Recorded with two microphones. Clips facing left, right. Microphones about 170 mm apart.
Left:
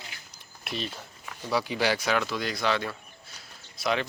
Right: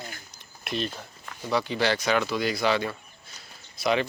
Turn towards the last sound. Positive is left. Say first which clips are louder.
# right 3 dB
turn(degrees=0)  # may be behind; listen again after turning